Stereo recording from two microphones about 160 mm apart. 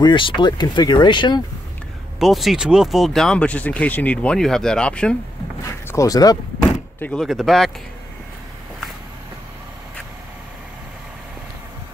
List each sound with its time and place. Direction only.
0.0 s speech: 30° left (ahead or behind)
2.1 s speech: centre (ahead or behind)
5.6 s speech: 20° left (ahead or behind)
7.0 s speech: 5° left (ahead or behind)